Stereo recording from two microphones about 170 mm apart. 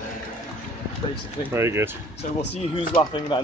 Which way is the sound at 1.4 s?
15° right (ahead or behind).